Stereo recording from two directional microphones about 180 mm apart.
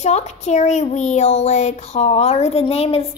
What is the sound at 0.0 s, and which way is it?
Speech, 40° left (ahead or behind).